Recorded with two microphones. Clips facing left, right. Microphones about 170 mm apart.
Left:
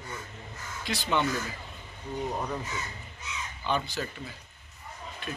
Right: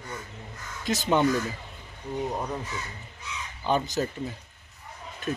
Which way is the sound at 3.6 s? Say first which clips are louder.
Right 5 dB; 40° right (ahead or behind).